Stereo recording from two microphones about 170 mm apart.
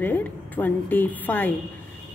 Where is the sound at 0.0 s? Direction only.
10° left (ahead or behind).